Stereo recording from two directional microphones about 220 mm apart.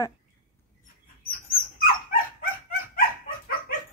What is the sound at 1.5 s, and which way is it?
Dog, 40° left (ahead or behind).